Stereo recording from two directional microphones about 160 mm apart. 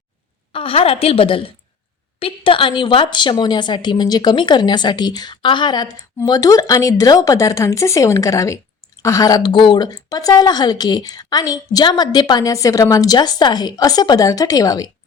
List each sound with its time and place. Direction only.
0.5 s a woman's voice: 35° left (ahead or behind)